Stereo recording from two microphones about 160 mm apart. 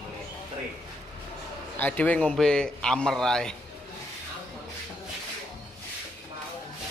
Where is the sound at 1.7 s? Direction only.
10° left (ahead or behind).